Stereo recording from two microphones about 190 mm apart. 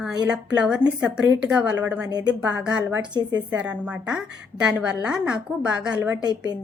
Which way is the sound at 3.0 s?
20° right (ahead or behind).